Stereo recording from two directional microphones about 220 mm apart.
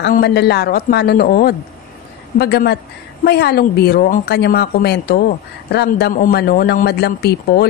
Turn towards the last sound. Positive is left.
turn(degrees=45)  # may be behind; listen again after turning